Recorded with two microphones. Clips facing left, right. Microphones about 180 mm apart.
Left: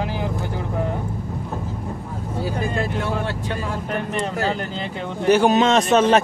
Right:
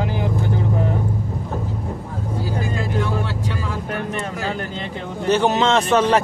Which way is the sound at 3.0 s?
55° left (ahead or behind).